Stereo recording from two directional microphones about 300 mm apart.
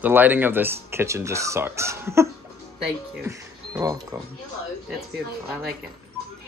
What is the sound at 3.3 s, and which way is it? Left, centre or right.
Speech, centre.